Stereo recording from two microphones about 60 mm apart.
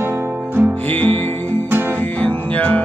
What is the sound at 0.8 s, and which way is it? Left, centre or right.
Music, left.